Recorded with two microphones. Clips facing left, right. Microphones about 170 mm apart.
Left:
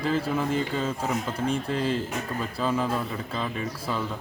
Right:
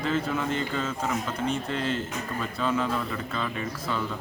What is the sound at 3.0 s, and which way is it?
Speech, 30° left (ahead or behind).